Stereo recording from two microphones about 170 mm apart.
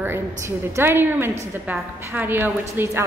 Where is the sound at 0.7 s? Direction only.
15° right (ahead or behind).